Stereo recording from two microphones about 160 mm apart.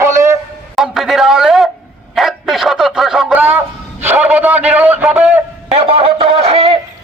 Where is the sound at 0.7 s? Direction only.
Centre (ahead or behind).